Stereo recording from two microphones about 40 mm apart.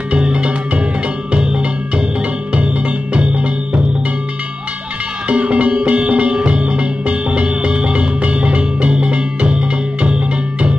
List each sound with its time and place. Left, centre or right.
0.1 s music: right
5.3 s music: right